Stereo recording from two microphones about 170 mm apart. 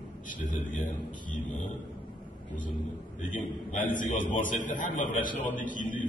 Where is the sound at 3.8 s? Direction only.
50° left (ahead or behind).